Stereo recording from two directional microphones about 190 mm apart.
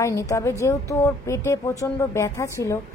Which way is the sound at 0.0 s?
15° left (ahead or behind).